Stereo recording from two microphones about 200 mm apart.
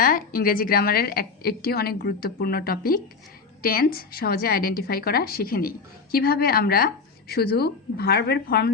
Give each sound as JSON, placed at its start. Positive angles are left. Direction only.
{"t": 0.0, "sound": "a woman's voice", "side_deg": 45}